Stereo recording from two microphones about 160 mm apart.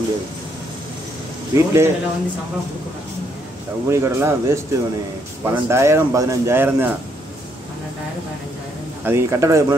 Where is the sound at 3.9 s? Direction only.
15° right (ahead or behind).